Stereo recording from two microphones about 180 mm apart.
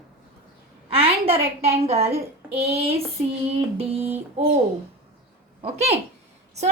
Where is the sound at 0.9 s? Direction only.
30° right (ahead or behind).